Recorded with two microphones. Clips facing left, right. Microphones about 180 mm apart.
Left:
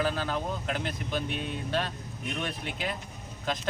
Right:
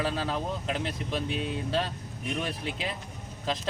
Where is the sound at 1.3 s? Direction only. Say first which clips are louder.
Right 2 dB; 30° right (ahead or behind).